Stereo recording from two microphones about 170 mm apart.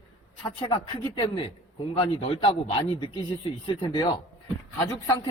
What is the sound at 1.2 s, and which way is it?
A man's voice, 30° left (ahead or behind).